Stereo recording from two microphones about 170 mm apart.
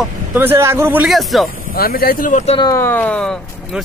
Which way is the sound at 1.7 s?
60° left (ahead or behind).